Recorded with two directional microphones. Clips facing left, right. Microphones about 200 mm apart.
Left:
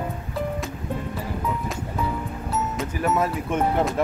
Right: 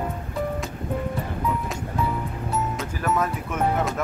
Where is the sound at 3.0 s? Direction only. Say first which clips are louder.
Left 2 dB; 30° left (ahead or behind).